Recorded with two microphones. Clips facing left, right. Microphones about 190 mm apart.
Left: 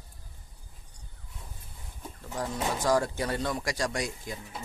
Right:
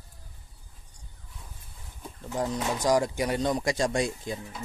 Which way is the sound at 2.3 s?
20° right (ahead or behind).